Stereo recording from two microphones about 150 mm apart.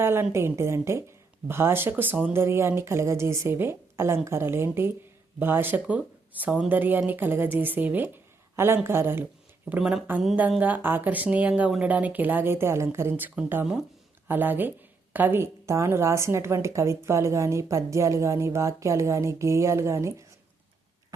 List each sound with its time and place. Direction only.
0.0 s a woman's voice: 15° right (ahead or behind)